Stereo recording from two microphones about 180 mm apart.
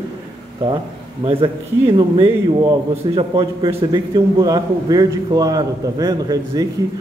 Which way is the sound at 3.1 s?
30° right (ahead or behind).